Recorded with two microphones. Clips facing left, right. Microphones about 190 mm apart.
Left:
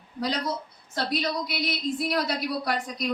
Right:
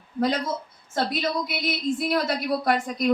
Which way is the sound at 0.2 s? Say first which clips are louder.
Right 4 dB; 50° right (ahead or behind).